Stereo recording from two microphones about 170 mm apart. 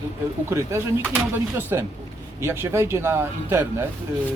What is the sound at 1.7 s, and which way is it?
Speech, 15° right (ahead or behind).